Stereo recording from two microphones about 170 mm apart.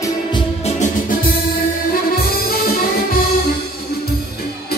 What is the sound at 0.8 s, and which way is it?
Music, 55° left (ahead or behind).